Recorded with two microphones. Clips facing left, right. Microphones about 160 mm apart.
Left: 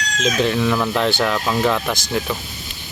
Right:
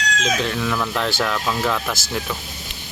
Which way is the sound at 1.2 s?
10° left (ahead or behind).